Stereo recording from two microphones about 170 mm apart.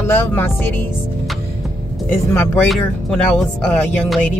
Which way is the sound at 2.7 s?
Centre (ahead or behind).